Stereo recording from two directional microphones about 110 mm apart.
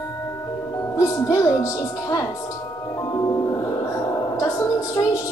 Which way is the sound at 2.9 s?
30° left (ahead or behind).